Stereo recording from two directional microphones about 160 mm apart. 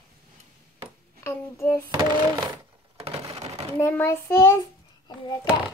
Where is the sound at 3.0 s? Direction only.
40° right (ahead or behind).